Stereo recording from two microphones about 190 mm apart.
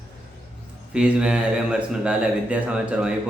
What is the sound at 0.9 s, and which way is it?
A man's voice, 5° right (ahead or behind).